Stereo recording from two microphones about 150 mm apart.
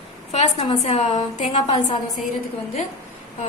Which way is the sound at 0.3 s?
45° left (ahead or behind).